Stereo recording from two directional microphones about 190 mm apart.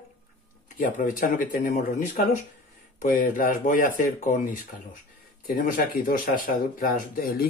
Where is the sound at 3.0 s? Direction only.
45° left (ahead or behind).